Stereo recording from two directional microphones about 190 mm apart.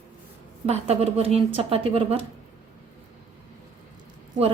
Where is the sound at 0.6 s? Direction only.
35° right (ahead or behind).